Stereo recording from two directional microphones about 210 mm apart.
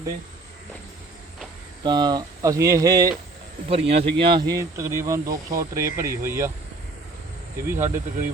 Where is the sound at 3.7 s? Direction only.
30° right (ahead or behind); by 6.5 s 15° right (ahead or behind).